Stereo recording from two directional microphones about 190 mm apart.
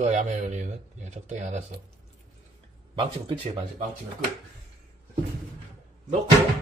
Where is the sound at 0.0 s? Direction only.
40° right (ahead or behind).